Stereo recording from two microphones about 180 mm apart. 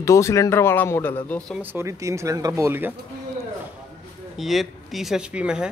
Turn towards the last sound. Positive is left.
turn(degrees=-5)  # may be behind; listen again after turning